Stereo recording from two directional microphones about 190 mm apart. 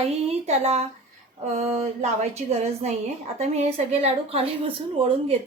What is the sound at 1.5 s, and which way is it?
Music, 35° right (ahead or behind).